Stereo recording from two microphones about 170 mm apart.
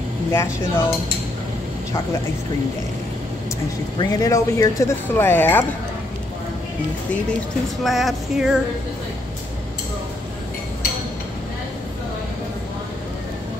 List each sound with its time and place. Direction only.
0.3 s speech: 15° left (ahead or behind)
4.0 s speech: 20° left (ahead or behind)
7.8 s speech: centre (ahead or behind)